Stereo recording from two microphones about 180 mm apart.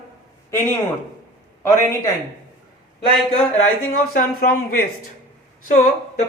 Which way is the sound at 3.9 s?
50° left (ahead or behind).